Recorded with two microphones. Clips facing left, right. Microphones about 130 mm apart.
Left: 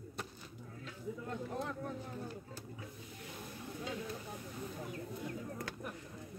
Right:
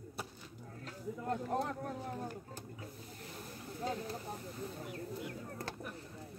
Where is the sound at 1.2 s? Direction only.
50° right (ahead or behind).